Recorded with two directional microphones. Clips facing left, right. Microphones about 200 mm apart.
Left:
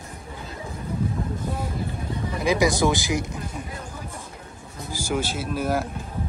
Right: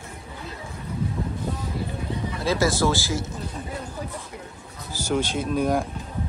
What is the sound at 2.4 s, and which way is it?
Speech, 15° left (ahead or behind).